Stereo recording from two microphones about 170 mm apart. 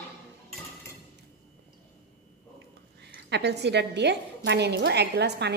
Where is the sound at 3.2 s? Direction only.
85° right.